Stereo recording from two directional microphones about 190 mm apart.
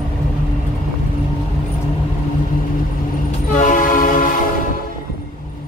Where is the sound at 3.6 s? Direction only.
45° left (ahead or behind).